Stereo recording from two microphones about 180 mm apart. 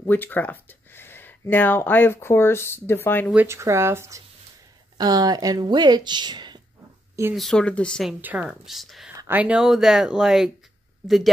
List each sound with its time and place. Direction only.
0.0 s speech: 10° left (ahead or behind)
3.4 s speech: 15° right (ahead or behind)
7.3 s speech: 5° left (ahead or behind)
9.1 s speech: 15° right (ahead or behind)